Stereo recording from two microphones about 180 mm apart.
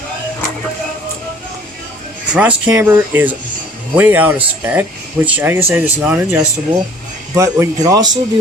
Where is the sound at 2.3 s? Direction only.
10° right (ahead or behind).